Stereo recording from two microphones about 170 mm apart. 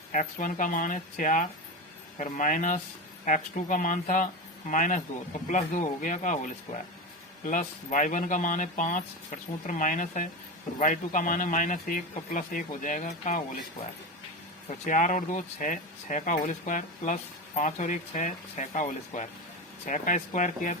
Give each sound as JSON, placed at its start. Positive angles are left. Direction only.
{"t": 0.1, "sound": "speech", "side_deg": 50}
{"t": 14.8, "sound": "speech", "side_deg": 50}